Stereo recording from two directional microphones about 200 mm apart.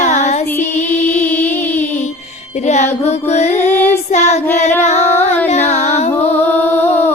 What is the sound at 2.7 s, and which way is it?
Music, 35° left (ahead or behind).